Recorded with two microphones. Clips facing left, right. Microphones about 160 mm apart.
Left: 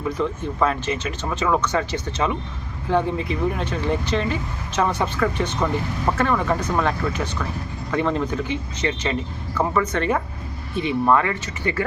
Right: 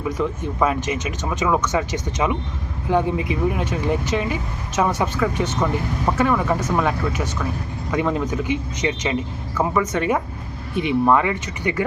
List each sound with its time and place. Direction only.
0.1 s speech: 10° right (ahead or behind)